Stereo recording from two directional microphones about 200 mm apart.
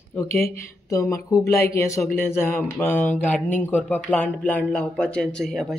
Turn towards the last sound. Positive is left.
turn(degrees=5)  # may be behind; listen again after turning